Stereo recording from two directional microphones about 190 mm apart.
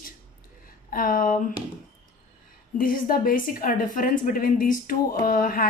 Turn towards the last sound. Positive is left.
turn(degrees=45)  # may be behind; listen again after turning